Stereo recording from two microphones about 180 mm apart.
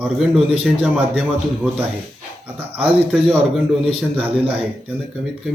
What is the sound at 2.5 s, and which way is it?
Speech, 5° right (ahead or behind).